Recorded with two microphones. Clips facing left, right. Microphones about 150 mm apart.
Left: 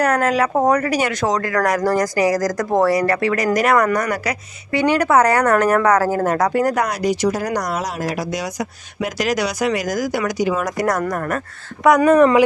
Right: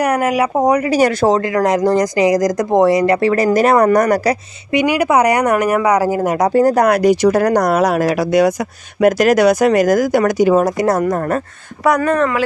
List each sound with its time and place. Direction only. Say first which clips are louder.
0.0 s speech: right 2 dB; 10° right (ahead or behind)
0.8 s speech: right 6 dB; 35° right (ahead or behind)
3.9 s speech: right 8 dB; 40° right (ahead or behind)
4.7 s speech: right 2 dB; 10° right (ahead or behind)
6.5 s speech: right 6 dB; 35° right (ahead or behind)
6.9 s speech: right 8 dB; 55° right (ahead or behind)
10.6 s speech: right 5 dB; 25° right (ahead or behind)
12.0 s speech: left 3 dB; 10° left (ahead or behind)